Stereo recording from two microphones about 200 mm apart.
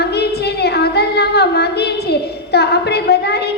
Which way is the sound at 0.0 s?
55° left (ahead or behind).